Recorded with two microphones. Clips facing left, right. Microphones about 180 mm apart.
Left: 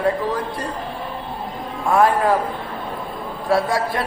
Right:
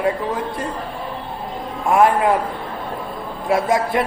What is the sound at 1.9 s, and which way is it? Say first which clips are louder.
Speech: right 1 dB; 20° right (ahead or behind).